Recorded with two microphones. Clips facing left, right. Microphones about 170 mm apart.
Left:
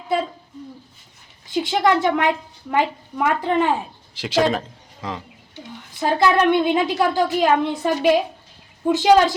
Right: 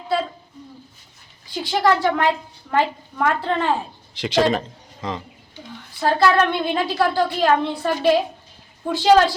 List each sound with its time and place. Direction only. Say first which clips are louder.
1.5 s a woman's voice: left 1 dB; 20° left (ahead or behind); by 5.2 s 5° left (ahead or behind)
6.0 s a woman's voice: even; 20° left (ahead or behind)